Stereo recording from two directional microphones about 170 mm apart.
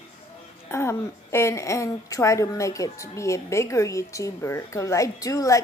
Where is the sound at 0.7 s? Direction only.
15° left (ahead or behind).